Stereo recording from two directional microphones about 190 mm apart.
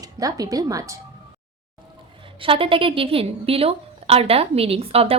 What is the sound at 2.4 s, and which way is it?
A woman's voice, 30° right (ahead or behind).